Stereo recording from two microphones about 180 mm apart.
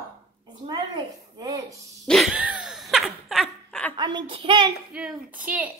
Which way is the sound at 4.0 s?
25° right (ahead or behind).